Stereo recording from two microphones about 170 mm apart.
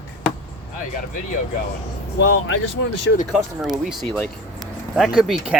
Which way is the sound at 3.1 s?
90° left.